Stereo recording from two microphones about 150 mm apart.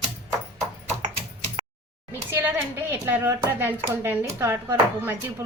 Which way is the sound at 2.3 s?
15° right (ahead or behind).